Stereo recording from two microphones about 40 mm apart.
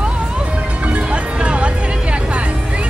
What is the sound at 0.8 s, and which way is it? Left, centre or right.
Music, right.